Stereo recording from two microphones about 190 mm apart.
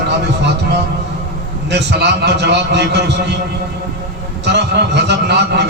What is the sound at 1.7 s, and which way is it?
A man's voice, 60° right (ahead or behind).